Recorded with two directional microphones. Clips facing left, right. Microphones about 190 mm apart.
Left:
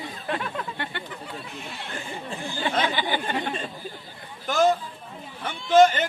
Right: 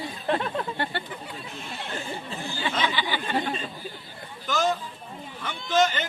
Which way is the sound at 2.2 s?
45° left (ahead or behind).